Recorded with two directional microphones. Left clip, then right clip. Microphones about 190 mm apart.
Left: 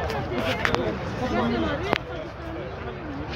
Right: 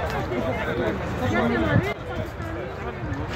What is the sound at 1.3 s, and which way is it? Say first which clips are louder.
Speech: right 3 dB; 35° right (ahead or behind).